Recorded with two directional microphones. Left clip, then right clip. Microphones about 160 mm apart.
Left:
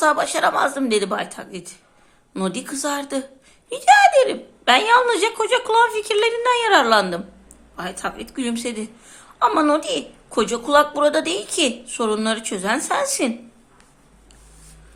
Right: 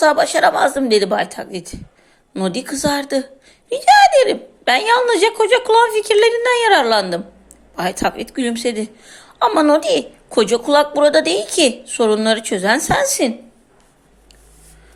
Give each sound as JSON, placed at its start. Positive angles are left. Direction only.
{"t": 0.0, "sound": "a woman's voice", "side_deg": -20}
{"t": 7.8, "sound": "a woman's voice", "side_deg": -35}
{"t": 8.3, "sound": "a woman's voice", "side_deg": -20}